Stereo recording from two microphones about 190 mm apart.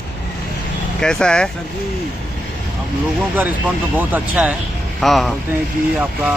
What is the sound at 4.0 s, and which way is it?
Speech, 10° right (ahead or behind).